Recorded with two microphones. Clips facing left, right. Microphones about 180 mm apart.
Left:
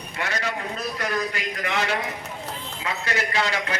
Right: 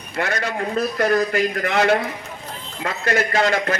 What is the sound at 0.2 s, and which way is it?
A man's voice, 50° right (ahead or behind).